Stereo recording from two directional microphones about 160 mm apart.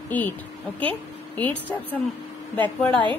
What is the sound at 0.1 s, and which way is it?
A woman's voice, 10° left (ahead or behind).